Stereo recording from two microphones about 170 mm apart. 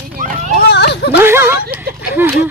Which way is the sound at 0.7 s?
75° left (ahead or behind).